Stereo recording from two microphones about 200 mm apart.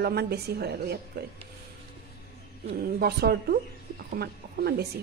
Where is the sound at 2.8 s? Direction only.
50° right (ahead or behind).